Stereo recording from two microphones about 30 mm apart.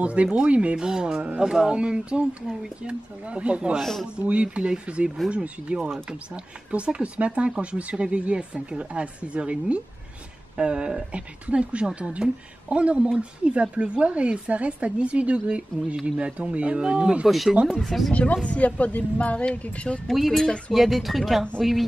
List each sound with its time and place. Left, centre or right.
0.0 s speech: right
0.7 s speech: right
1.7 s speech: right
11.1 s speech: right
16.2 s speech: right
16.6 s speech: right
17.3 s speech: centre
18.1 s speech: left
20.1 s speech: centre